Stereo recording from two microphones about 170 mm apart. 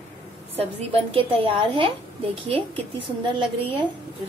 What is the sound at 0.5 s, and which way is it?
A woman's voice, 35° right (ahead or behind).